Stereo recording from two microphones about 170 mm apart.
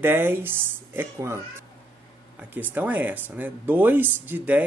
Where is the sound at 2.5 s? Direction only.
10° right (ahead or behind).